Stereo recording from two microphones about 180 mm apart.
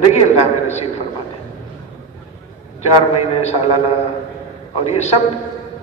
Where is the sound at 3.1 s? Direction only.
35° left (ahead or behind).